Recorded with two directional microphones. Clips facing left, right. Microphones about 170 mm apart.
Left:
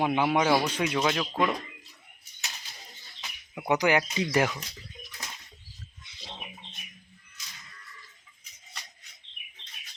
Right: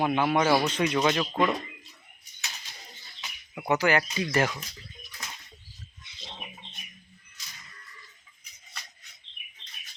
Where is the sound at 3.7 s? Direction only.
15° left (ahead or behind).